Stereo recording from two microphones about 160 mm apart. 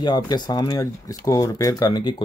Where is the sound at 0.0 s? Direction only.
25° left (ahead or behind).